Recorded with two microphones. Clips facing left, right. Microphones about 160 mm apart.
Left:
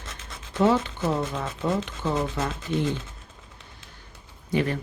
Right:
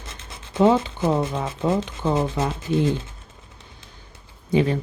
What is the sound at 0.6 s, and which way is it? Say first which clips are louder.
Speech: right 4 dB; 25° right (ahead or behind).